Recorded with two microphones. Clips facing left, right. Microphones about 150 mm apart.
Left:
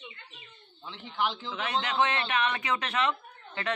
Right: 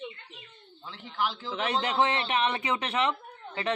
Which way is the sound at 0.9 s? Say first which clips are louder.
Even; 5° right (ahead or behind).